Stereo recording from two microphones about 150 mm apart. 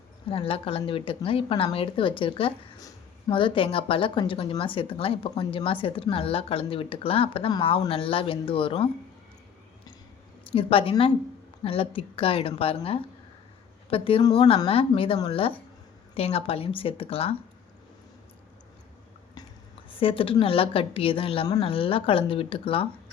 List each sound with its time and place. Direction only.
0.3 s a woman's voice: 40° left (ahead or behind)
10.5 s a woman's voice: 35° left (ahead or behind)
19.9 s a woman's voice: 35° left (ahead or behind)